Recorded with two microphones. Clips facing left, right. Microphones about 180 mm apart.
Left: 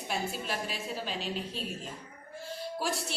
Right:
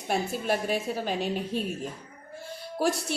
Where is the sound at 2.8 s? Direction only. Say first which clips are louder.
Right 8 dB; 55° right (ahead or behind).